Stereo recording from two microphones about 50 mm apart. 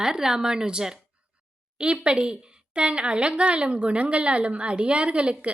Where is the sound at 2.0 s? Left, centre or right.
Centre.